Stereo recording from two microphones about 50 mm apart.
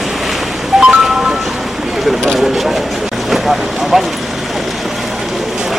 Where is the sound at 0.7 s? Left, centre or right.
Centre.